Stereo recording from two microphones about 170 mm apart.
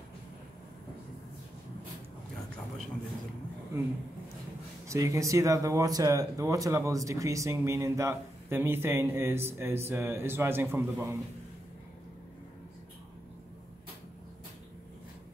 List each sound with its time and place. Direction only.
4.8 s speech: 20° right (ahead or behind)